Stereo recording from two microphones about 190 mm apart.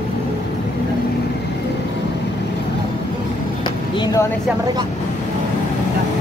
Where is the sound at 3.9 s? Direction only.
25° left (ahead or behind).